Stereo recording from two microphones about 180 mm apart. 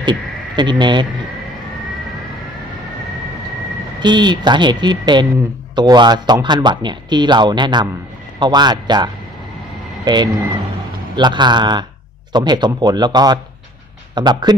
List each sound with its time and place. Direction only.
0.0 s speech: 25° right (ahead or behind)
4.0 s speech: 25° right (ahead or behind)